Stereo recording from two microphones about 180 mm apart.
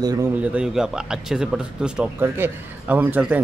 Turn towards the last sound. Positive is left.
turn(degrees=-10)  # may be behind; listen again after turning